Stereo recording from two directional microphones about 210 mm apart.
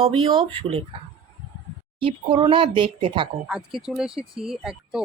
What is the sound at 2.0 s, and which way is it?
Speech, 25° right (ahead or behind).